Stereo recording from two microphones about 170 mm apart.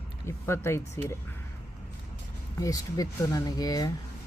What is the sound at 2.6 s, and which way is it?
Speech, 20° left (ahead or behind).